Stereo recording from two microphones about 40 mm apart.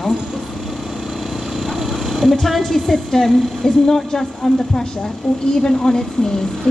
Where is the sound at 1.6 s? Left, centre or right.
Centre.